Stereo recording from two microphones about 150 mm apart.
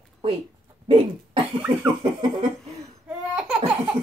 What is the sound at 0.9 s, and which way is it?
Cough, 35° right (ahead or behind).